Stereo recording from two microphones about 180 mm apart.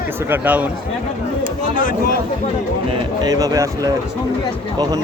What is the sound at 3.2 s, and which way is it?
Speech, 20° right (ahead or behind).